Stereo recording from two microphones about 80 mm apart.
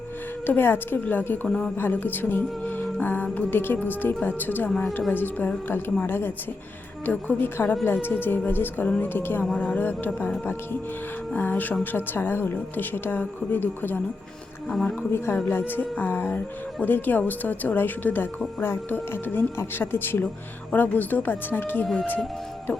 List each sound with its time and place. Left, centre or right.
0.4 s speech: left
1.5 s speech: centre
1.7 s music: left
3.3 s speech: left
11.3 s speech: left
15.4 s speech: left